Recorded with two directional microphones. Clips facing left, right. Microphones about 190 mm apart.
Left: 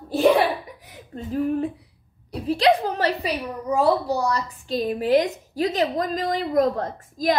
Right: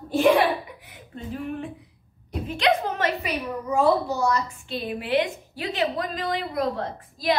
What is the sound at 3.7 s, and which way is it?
A woman's voice, 35° left (ahead or behind).